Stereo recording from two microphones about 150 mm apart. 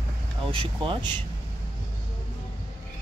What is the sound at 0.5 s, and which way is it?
Speech, 35° right (ahead or behind).